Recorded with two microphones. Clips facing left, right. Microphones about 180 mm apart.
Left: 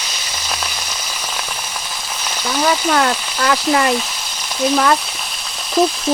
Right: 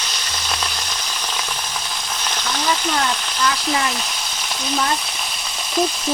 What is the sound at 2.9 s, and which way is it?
Speech, 70° left (ahead or behind).